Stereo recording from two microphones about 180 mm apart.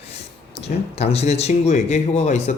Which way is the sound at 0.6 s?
35° left (ahead or behind).